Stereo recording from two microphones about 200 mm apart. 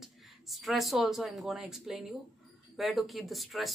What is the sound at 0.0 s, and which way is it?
Speech, centre (ahead or behind).